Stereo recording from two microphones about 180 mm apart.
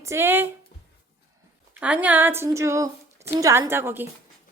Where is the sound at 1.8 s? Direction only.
5° right (ahead or behind).